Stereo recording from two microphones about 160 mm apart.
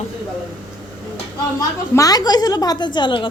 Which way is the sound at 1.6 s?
20° left (ahead or behind).